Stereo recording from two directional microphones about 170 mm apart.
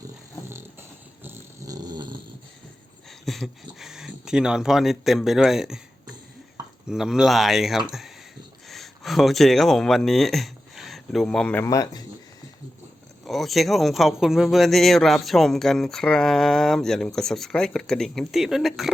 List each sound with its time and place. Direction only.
0.5 s dog: 15° right (ahead or behind)
3.1 s a man's voice: centre (ahead or behind); by 12.0 s 20° left (ahead or behind)
13.2 s a man's voice: centre (ahead or behind)